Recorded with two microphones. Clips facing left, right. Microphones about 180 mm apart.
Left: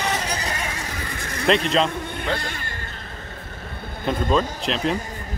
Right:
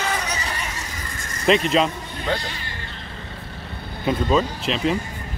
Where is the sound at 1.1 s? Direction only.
65° left (ahead or behind).